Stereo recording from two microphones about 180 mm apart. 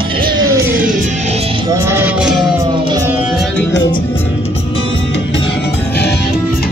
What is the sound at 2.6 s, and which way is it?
Music, 25° right (ahead or behind).